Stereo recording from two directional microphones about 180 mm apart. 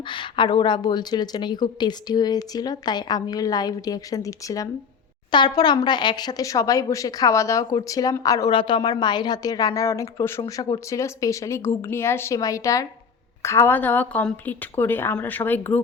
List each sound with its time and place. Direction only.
0.1 s a woman's voice: 25° left (ahead or behind); by 15.8 s 10° left (ahead or behind)